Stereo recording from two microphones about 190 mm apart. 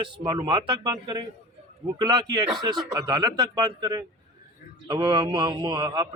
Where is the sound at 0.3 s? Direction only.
25° right (ahead or behind).